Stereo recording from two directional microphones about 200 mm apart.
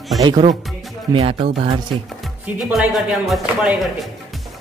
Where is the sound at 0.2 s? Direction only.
20° right (ahead or behind).